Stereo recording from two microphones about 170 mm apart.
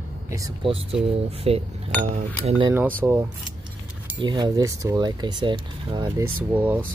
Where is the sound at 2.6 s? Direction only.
15° right (ahead or behind).